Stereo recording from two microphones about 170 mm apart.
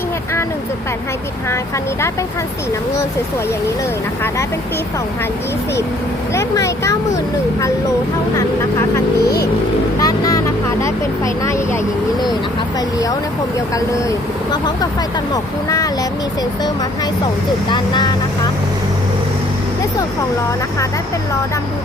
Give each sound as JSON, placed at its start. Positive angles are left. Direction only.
{"t": 6.3, "sound": "speech", "side_deg": 20}
{"t": 10.0, "sound": "vehicle", "side_deg": 20}
{"t": 11.4, "sound": "speech", "side_deg": 15}
{"t": 13.7, "sound": "speech", "side_deg": 20}
{"t": 17.7, "sound": "speech", "side_deg": 25}